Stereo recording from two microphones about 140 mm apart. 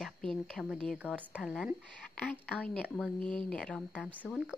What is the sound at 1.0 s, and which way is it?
Speech, 10° right (ahead or behind).